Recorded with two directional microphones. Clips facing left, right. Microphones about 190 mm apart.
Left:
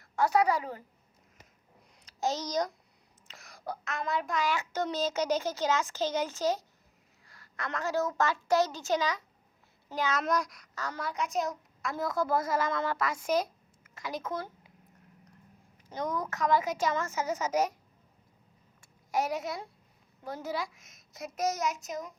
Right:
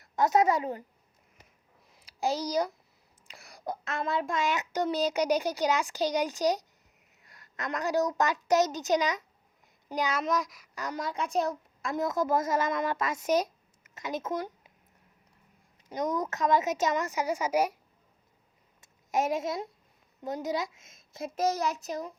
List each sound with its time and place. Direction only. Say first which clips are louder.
0.2 s a child's voice: right 2 dB; 20° right (ahead or behind)
2.0 s a woman's voice: right 2 dB; 10° right (ahead or behind)
3.2 s whispering: right 2 dB; 15° right (ahead or behind)
3.8 s a child's voice: right 2 dB; 30° right (ahead or behind)
10.2 s speech: even; centre (ahead or behind)
10.8 s a child's voice: right 2 dB; 15° right (ahead or behind)
11.1 s a woman's voice: right 3 dB; 30° right (ahead or behind)
15.9 s a child's voice: right 3 dB; 20° right (ahead or behind)
18.8 s a sound: right 2 dB; 25° right (ahead or behind)
20.2 s a child's voice: right 4 dB; 20° right (ahead or behind); by 22.1 s 35° right (ahead or behind)